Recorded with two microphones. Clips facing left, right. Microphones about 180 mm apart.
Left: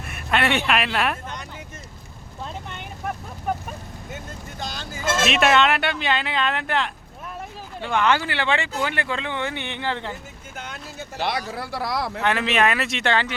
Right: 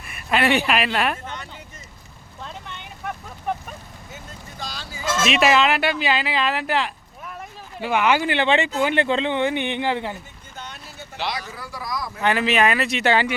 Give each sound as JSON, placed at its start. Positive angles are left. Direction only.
{"t": 0.0, "sound": "speech", "side_deg": 0}
{"t": 4.7, "sound": "vehicle", "side_deg": 50}
{"t": 5.2, "sound": "speech", "side_deg": 0}
{"t": 11.2, "sound": "a man's voice", "side_deg": 60}
{"t": 12.2, "sound": "speech", "side_deg": 0}